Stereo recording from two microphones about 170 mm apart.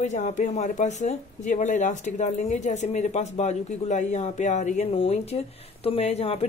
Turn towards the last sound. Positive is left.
turn(degrees=35)  # may be behind; listen again after turning